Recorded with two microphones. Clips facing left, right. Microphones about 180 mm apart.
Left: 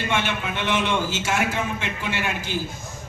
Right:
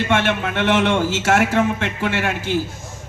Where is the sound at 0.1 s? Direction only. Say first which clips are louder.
Right 5 dB; 75° right (ahead or behind).